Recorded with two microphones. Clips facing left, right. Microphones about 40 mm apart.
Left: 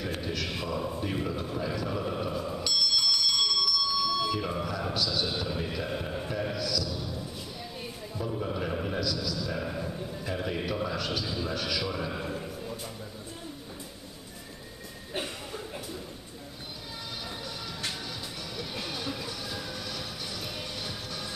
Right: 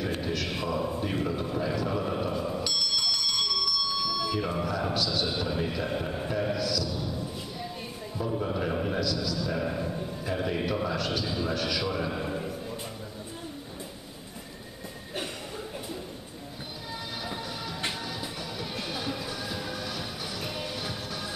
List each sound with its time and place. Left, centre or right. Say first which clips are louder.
0.0 s a man's voice: right 2 dB; centre
8.2 s a man's voice: right 3 dB; centre
18.6 s music: right 1 dB; centre